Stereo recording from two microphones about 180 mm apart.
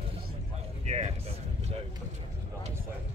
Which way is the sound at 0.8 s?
35° right (ahead or behind).